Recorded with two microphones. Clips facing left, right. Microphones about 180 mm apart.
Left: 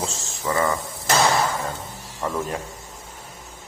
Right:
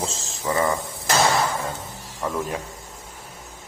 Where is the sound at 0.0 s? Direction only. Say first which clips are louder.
Even; 30° right (ahead or behind).